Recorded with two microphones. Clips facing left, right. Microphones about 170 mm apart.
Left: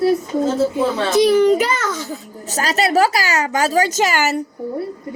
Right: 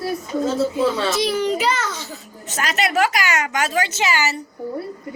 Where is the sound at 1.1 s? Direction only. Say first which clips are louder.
Left 8 dB; 45° left (ahead or behind).